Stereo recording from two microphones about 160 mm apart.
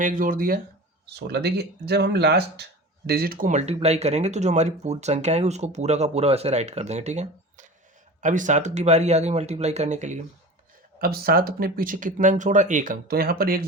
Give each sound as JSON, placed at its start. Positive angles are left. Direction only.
{"t": 0.0, "sound": "speech", "side_deg": -60}
{"t": 1.0, "sound": "speech", "side_deg": -90}
{"t": 3.1, "sound": "speech", "side_deg": -70}
{"t": 11.0, "sound": "speech", "side_deg": -70}